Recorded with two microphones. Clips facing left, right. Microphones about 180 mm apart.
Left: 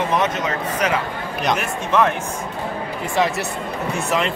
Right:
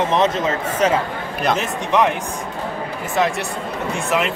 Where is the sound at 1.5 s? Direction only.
15° right (ahead or behind).